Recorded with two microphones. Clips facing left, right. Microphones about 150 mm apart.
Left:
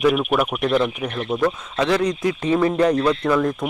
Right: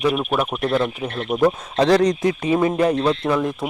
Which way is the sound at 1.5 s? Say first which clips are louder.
Right 7 dB; 35° right (ahead or behind).